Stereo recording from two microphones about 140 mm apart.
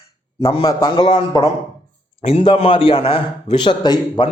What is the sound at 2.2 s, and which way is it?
A man's voice, 50° left (ahead or behind).